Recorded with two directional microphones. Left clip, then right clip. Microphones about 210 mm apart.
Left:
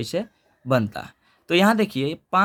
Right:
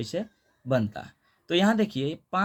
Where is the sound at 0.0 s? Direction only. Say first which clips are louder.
Left 5 dB; 35° left (ahead or behind).